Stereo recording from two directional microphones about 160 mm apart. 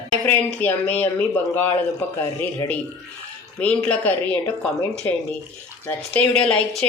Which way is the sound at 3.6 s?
10° left (ahead or behind).